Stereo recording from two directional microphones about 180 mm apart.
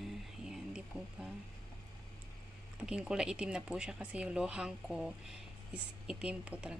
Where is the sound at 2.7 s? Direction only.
5° right (ahead or behind).